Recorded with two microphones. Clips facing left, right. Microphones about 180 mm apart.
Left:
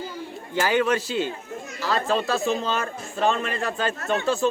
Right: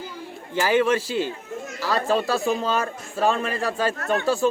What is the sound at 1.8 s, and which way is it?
A man's voice, 10° right (ahead or behind).